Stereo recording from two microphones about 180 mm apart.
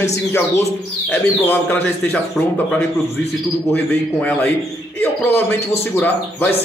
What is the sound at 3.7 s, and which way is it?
A man's voice, 5° left (ahead or behind).